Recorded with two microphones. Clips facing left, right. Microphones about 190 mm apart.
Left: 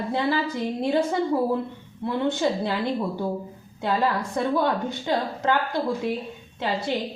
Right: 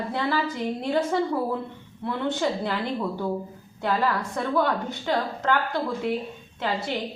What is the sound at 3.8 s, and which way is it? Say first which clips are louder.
A woman's voice: left 1 dB; 20° left (ahead or behind).